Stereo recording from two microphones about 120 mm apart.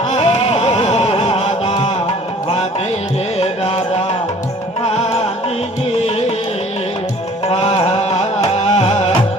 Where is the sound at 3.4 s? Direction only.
55° left (ahead or behind).